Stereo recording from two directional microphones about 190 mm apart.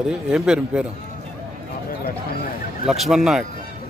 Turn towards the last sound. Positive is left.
turn(degrees=0)  # may be behind; listen again after turning